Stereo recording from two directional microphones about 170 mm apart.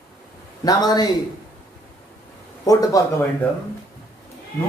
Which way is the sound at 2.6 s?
20° left (ahead or behind).